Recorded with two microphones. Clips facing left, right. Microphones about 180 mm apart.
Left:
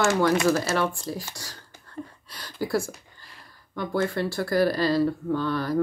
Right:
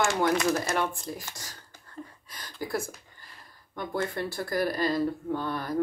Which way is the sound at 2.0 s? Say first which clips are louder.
Left 5 dB; 10° left (ahead or behind).